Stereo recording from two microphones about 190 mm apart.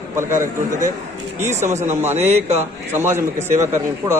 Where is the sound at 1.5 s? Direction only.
40° right (ahead or behind).